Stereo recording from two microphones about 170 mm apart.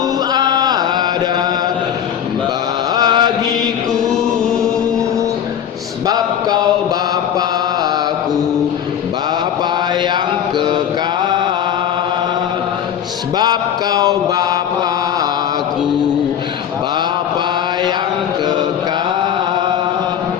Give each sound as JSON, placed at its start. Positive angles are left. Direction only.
{"t": 0.3, "sound": "music", "side_deg": -25}
{"t": 2.9, "sound": "chant", "side_deg": -25}
{"t": 13.4, "sound": "a sound", "side_deg": -25}